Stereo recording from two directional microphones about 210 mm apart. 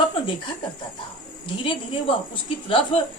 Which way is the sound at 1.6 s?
25° left (ahead or behind).